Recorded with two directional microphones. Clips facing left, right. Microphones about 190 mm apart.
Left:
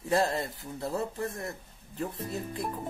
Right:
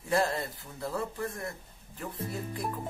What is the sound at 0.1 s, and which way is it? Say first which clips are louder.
Speech: left 1 dB; 25° left (ahead or behind).